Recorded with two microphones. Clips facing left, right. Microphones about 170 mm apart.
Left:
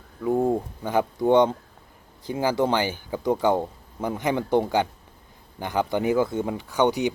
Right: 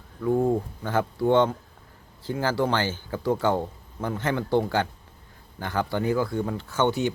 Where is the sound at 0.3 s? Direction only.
20° left (ahead or behind).